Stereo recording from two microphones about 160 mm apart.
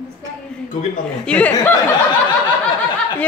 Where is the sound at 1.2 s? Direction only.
10° left (ahead or behind).